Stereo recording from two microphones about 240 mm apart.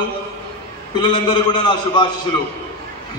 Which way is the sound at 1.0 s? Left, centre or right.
Centre.